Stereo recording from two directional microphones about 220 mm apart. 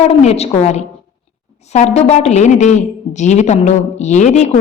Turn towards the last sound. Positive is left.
turn(degrees=30)  # may be behind; listen again after turning